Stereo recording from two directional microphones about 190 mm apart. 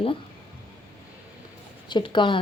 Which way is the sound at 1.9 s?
25° left (ahead or behind).